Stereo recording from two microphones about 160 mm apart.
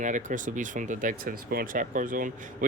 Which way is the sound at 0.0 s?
50° right (ahead or behind).